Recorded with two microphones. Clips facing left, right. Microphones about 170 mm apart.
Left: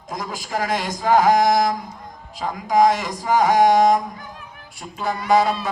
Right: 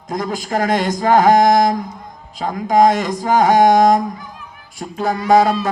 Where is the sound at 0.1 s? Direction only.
50° right (ahead or behind).